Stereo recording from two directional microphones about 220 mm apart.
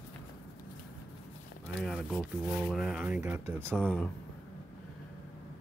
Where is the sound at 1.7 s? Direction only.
Centre (ahead or behind).